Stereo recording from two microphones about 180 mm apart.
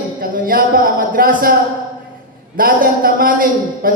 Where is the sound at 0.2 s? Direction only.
50° right (ahead or behind).